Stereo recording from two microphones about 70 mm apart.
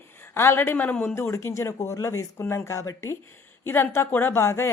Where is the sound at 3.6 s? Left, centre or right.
Left.